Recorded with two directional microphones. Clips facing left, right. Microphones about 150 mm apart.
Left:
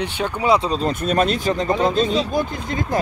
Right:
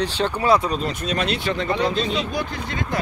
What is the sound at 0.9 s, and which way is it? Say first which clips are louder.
Speech: left 5 dB; 50° left (ahead or behind).